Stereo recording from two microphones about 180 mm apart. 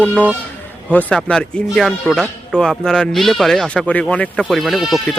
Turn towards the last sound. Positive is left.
turn(degrees=0)  # may be behind; listen again after turning